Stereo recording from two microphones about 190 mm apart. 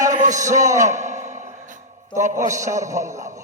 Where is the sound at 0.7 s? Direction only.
40° right (ahead or behind).